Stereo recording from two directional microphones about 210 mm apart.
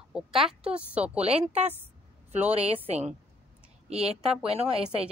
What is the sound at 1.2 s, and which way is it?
Speech, 30° right (ahead or behind).